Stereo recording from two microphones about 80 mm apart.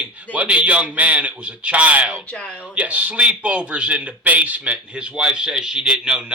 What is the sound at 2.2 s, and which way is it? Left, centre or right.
Speech, centre.